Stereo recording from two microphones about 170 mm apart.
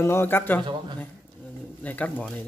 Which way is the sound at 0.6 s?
25° right (ahead or behind).